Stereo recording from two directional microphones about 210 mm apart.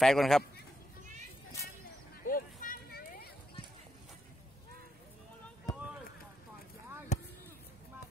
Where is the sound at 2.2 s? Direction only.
40° left (ahead or behind).